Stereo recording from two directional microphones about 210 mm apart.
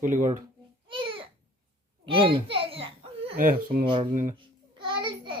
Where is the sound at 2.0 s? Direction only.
25° right (ahead or behind).